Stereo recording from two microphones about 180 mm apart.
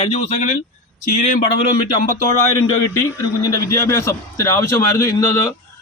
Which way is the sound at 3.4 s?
20° left (ahead or behind).